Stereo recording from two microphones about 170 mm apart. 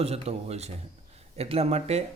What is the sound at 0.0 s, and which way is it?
Speech, 35° right (ahead or behind).